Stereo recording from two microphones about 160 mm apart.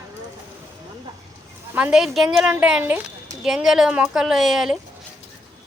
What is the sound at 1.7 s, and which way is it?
Speech, 5° right (ahead or behind).